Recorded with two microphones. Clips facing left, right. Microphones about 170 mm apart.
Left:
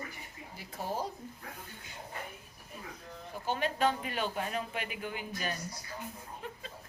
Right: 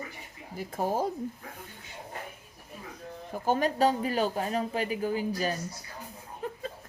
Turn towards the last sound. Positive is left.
turn(degrees=-40)  # may be behind; listen again after turning